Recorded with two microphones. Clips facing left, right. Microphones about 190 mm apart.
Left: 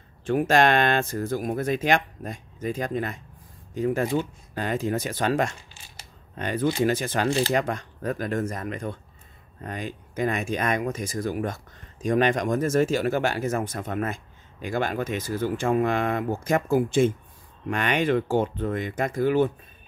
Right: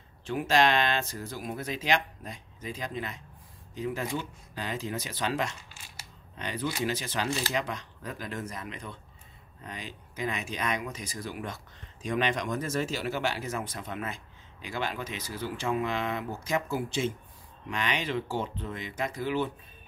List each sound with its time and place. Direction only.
0.2 s speech: 50° left (ahead or behind)